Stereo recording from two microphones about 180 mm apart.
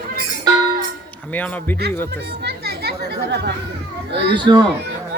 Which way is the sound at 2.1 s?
65° right (ahead or behind).